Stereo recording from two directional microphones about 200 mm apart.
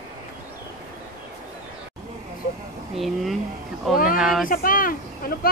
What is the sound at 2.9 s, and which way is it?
A woman's voice, centre (ahead or behind).